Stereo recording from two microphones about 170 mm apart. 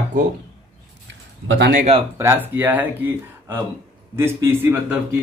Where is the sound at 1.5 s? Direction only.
90° right.